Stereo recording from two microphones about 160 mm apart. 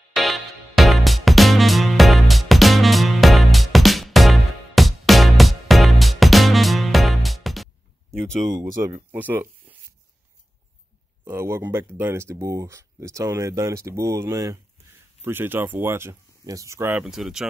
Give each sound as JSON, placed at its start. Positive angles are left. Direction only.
{"t": 0.1, "sound": "music", "side_deg": 0}
{"t": 8.8, "sound": "speech", "side_deg": -15}
{"t": 11.2, "sound": "speech", "side_deg": -15}
{"t": 17.0, "sound": "speech", "side_deg": 0}